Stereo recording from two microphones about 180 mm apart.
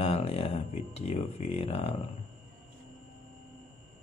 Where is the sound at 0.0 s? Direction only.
35° left (ahead or behind).